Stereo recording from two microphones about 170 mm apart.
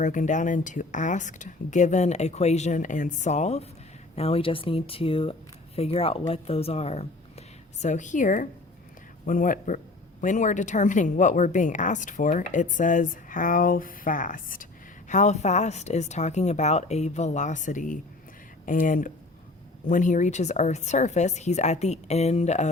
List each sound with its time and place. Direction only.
0.0 s speech: 50° left (ahead or behind)